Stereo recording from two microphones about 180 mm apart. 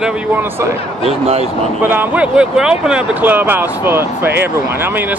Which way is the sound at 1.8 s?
10° right (ahead or behind).